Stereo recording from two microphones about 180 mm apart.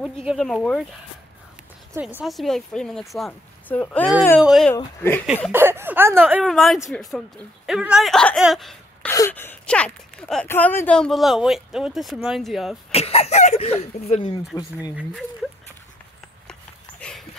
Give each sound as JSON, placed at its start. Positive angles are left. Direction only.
{"t": 0.0, "sound": "speech", "side_deg": -5}
{"t": 2.0, "sound": "speech", "side_deg": -10}
{"t": 4.7, "sound": "speech", "side_deg": 10}
{"t": 5.5, "sound": "speech", "side_deg": -10}
{"t": 6.4, "sound": "speech", "side_deg": 0}
{"t": 9.1, "sound": "speech", "side_deg": 15}
{"t": 12.9, "sound": "speech", "side_deg": 35}
{"t": 14.5, "sound": "speech", "side_deg": -5}